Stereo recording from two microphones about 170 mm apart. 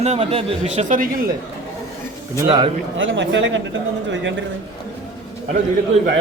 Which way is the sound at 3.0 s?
90° right.